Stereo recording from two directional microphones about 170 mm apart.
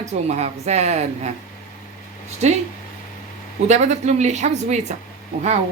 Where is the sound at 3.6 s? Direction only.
40° right (ahead or behind).